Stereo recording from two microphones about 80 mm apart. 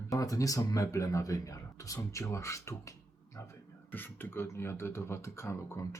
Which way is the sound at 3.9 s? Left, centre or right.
Left.